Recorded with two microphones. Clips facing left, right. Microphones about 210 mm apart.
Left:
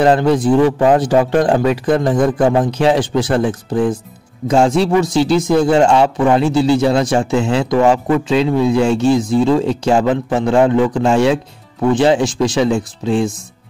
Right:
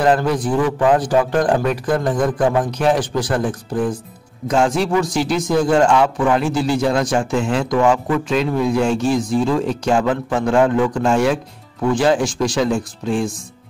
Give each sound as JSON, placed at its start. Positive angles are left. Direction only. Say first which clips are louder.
{"t": 0.0, "sound": "speech", "louder": "left 4 dB", "side_deg": 25}
{"t": 4.5, "sound": "speech", "louder": "left 4 dB", "side_deg": 25}